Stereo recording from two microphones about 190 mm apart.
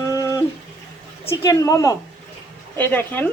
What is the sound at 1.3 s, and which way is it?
Speech, 15° left (ahead or behind).